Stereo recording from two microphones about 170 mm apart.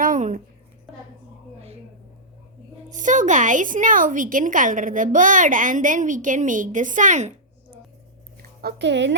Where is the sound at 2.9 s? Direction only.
45° right (ahead or behind).